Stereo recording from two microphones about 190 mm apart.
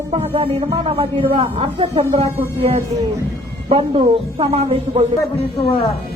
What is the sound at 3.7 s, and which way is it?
Speech, 30° right (ahead or behind).